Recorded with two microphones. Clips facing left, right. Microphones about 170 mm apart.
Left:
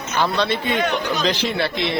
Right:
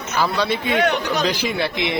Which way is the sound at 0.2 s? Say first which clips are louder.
Even; 10° right (ahead or behind).